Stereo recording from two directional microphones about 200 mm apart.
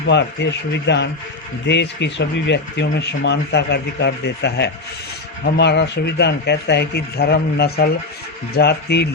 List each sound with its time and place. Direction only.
0.1 s speech: 60° left (ahead or behind)